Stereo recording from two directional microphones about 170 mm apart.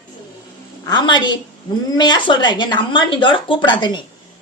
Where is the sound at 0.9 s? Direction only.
25° left (ahead or behind).